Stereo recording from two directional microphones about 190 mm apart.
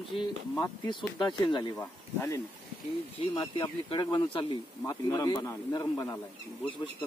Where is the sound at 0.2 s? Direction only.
25° left (ahead or behind).